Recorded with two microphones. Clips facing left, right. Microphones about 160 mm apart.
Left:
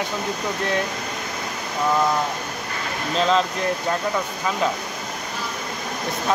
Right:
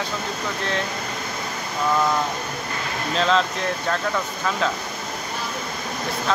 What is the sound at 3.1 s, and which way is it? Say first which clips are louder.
Speech: left 1 dB; 5° left (ahead or behind).